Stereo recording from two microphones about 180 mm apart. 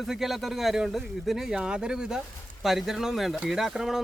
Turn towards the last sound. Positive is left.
turn(degrees=0)  # may be behind; listen again after turning